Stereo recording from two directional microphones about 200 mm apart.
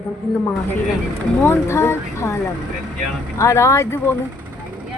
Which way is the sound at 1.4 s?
10° left (ahead or behind).